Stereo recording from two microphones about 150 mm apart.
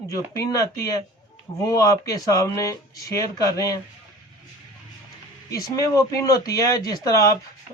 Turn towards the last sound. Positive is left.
turn(degrees=25)  # may be behind; listen again after turning